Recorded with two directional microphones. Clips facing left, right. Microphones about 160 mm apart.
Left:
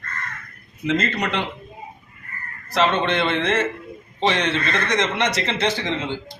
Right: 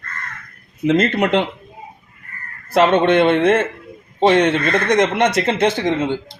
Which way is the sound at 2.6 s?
50° right (ahead or behind).